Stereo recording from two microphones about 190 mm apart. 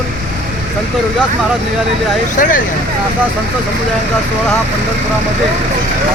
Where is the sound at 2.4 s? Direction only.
45° left (ahead or behind).